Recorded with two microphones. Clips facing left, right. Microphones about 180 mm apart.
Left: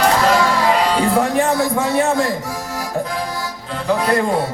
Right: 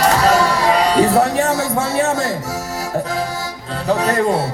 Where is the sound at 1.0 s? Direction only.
40° right (ahead or behind).